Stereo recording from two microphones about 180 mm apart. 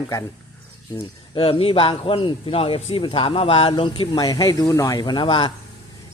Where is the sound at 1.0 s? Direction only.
30° left (ahead or behind).